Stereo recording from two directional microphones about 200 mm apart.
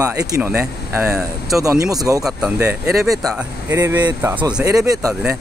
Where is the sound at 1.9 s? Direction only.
15° right (ahead or behind).